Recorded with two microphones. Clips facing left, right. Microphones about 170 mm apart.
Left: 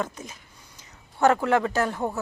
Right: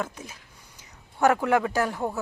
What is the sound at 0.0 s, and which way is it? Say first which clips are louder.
A woman's voice: left 2 dB; 10° right (ahead or behind).